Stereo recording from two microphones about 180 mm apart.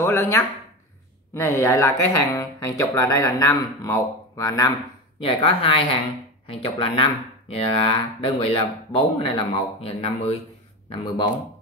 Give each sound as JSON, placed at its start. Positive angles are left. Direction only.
{"t": 0.0, "sound": "a sound", "side_deg": 15}
{"t": 1.3, "sound": "speech", "side_deg": 15}
{"t": 5.2, "sound": "a man's voice", "side_deg": 30}